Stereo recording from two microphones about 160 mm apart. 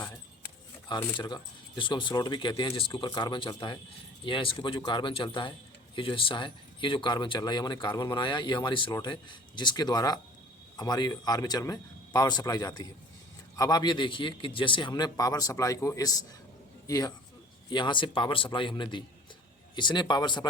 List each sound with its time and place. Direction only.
1.2 s a man's voice: 25° left (ahead or behind)